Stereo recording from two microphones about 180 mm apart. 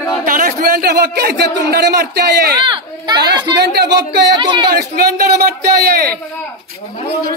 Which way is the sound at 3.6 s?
65° right (ahead or behind).